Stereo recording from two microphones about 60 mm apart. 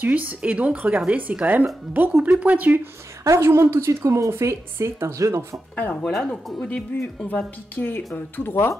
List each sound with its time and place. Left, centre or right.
0.0 s a woman's voice: right
3.3 s a woman's voice: right
5.8 s a woman's voice: left
6.0 s speech: centre
6.9 s a woman's voice: left
8.5 s speech: left